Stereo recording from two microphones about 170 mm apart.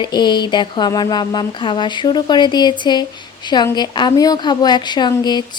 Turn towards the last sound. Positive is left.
turn(degrees=25)  # may be behind; listen again after turning